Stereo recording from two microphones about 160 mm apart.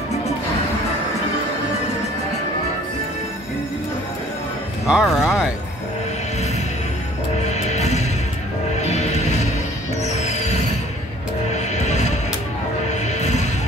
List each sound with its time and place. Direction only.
4.8 s speech: 5° right (ahead or behind)
7.4 s music: 45° left (ahead or behind)
13.2 s music: 45° left (ahead or behind)